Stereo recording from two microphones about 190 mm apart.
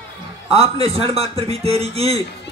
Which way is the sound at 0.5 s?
30° right (ahead or behind).